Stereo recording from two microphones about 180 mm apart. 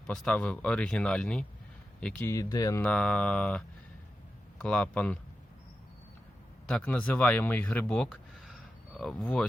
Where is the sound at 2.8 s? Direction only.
5° left (ahead or behind).